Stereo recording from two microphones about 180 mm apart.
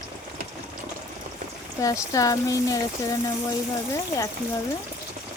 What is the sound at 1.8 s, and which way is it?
Speech, 20° left (ahead or behind).